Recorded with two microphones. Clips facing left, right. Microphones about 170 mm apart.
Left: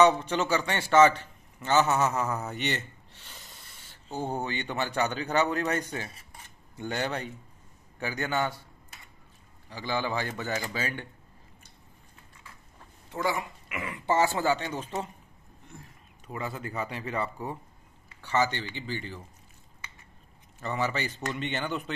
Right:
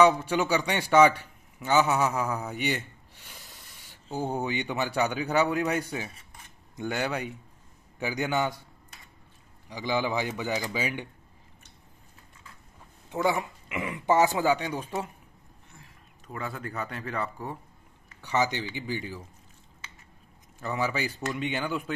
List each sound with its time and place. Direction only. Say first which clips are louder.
0.0 s a man's voice: right 1 dB; 10° right (ahead or behind)
9.7 s a man's voice: right 3 dB; 15° right (ahead or behind)
13.1 s a man's voice: right 3 dB; 20° right (ahead or behind)
16.3 s speech: even; centre (ahead or behind)
18.2 s a man's voice: even; 15° right (ahead or behind)
20.6 s a man's voice: right 1 dB; 5° right (ahead or behind)